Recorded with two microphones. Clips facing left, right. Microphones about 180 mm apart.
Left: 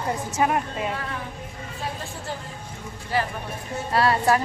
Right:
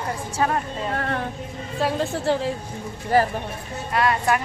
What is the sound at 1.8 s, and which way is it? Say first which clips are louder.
Speech: right 11 dB; 90° right.